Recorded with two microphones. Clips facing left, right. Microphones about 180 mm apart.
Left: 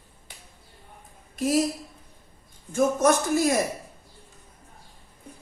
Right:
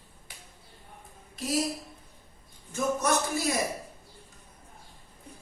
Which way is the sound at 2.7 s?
50° left (ahead or behind).